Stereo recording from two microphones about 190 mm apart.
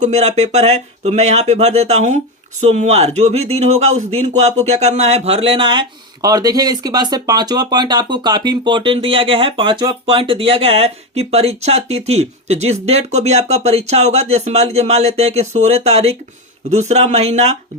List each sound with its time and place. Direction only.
0.0 s speech: 35° right (ahead or behind)